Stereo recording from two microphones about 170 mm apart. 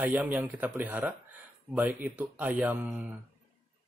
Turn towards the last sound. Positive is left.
turn(degrees=-5)  # may be behind; listen again after turning